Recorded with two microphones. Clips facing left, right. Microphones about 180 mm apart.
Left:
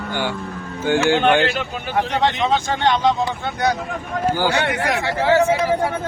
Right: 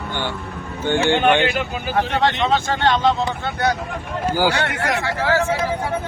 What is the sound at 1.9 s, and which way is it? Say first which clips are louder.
Speech: even; 15° left (ahead or behind).